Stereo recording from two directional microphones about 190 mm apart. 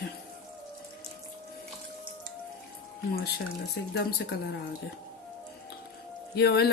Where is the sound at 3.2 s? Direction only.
60° left (ahead or behind).